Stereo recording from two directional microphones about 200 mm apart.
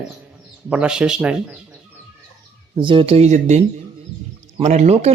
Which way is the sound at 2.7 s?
25° right (ahead or behind).